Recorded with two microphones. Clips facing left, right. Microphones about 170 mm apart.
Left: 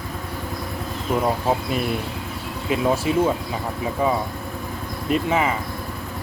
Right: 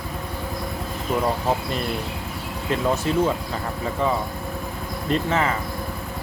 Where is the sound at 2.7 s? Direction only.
10° left (ahead or behind).